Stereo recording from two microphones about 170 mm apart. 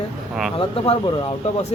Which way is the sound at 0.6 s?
35° left (ahead or behind).